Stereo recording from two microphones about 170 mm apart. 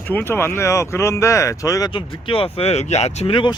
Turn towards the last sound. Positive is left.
turn(degrees=30)  # may be behind; listen again after turning